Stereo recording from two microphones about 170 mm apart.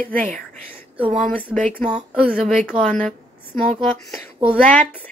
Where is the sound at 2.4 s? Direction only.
Centre (ahead or behind).